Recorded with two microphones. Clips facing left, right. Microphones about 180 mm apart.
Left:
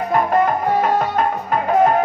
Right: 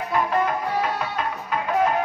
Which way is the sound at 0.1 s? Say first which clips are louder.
Left 5 dB; 50° left (ahead or behind).